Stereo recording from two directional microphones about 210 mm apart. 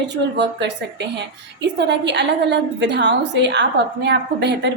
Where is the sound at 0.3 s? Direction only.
55° right (ahead or behind).